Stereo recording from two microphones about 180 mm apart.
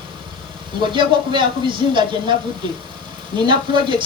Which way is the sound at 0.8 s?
25° right (ahead or behind).